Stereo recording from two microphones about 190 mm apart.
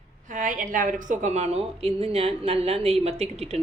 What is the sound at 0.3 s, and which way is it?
A woman's voice, 45° right (ahead or behind).